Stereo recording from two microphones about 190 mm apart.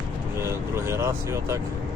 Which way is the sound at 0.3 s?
15° right (ahead or behind).